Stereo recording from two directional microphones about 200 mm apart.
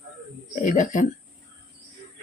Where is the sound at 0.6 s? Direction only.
40° left (ahead or behind).